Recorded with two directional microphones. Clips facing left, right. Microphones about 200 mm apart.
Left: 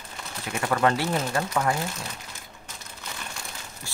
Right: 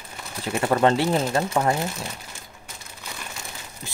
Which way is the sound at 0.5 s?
25° right (ahead or behind).